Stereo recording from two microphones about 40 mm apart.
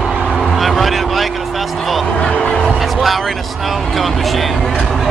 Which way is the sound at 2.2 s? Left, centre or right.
Left.